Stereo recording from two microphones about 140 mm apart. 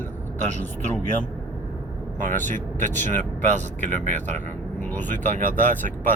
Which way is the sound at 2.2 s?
65° right (ahead or behind).